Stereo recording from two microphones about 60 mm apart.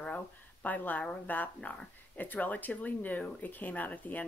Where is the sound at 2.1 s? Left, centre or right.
Left.